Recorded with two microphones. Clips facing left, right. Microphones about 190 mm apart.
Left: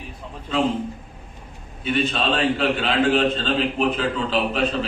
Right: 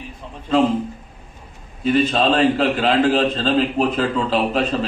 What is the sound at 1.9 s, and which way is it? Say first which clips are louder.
A man's voice: right 6 dB; 40° right (ahead or behind).